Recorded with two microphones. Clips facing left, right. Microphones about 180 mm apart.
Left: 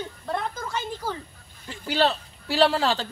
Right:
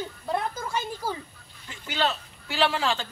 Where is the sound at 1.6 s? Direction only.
35° left (ahead or behind).